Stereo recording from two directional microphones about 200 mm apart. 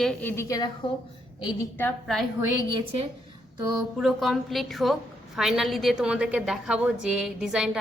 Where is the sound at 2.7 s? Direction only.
25° right (ahead or behind).